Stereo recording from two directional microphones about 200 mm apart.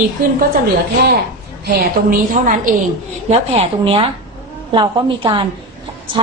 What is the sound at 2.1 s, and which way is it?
Speech, 45° right (ahead or behind).